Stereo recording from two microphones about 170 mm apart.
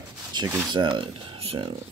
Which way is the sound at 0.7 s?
30° right (ahead or behind).